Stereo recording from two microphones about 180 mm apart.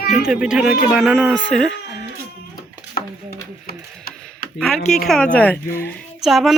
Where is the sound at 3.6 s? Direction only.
55° left (ahead or behind).